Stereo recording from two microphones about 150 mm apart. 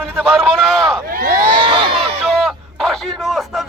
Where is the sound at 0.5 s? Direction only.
Centre (ahead or behind).